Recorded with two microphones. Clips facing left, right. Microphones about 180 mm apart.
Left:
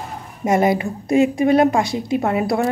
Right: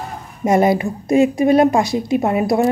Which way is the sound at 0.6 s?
15° left (ahead or behind).